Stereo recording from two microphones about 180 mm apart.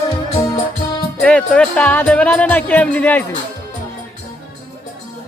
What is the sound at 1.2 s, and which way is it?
Speech, 5° left (ahead or behind).